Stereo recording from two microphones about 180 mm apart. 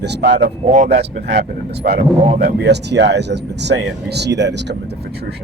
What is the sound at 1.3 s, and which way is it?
Speech, 65° right (ahead or behind).